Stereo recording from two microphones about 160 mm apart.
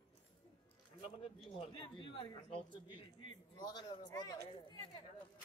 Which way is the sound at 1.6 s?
30° left (ahead or behind).